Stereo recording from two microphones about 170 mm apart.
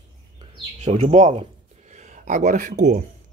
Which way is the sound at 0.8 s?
40° right (ahead or behind).